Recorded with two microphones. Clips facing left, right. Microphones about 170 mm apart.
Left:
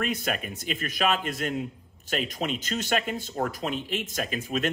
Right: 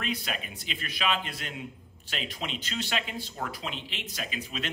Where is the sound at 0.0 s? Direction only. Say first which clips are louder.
Left 5 dB; 45° left (ahead or behind).